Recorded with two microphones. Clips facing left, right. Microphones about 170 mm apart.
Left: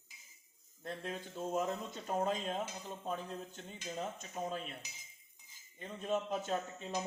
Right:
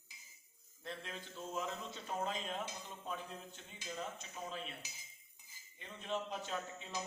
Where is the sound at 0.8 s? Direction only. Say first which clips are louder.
Left 5 dB; 45° left (ahead or behind).